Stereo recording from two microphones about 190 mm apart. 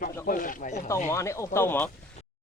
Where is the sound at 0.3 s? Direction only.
45° left (ahead or behind).